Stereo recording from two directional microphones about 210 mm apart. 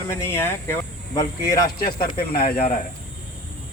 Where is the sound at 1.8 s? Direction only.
45° left (ahead or behind).